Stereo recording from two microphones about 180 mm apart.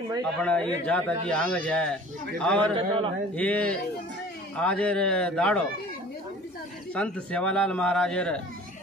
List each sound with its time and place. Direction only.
0.2 s a man's voice: 5° left (ahead or behind)
2.6 s a man's voice: 30° right (ahead or behind)
3.3 s a man's voice: 10° left (ahead or behind)
6.9 s a man's voice: 5° left (ahead or behind)